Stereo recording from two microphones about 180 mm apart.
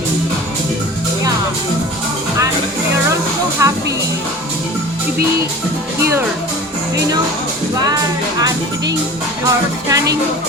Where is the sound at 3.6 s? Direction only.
15° right (ahead or behind).